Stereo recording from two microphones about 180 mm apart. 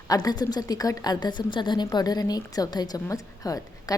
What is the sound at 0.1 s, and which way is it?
A woman's voice, 20° left (ahead or behind).